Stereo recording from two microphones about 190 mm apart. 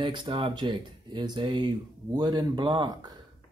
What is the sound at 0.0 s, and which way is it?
Speech, 25° right (ahead or behind).